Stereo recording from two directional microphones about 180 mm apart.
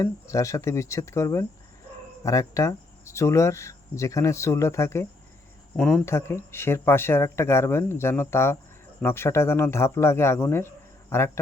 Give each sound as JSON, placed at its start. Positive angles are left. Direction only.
{"t": 0.0, "sound": "speech", "side_deg": 15}